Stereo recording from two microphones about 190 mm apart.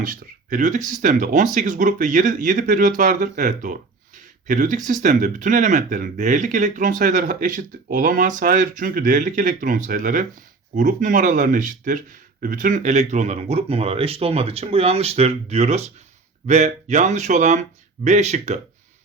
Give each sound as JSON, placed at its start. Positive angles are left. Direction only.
{"t": 0.0, "sound": "speech", "side_deg": -45}